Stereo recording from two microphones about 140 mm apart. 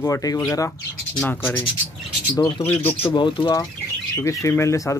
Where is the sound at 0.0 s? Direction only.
25° left (ahead or behind).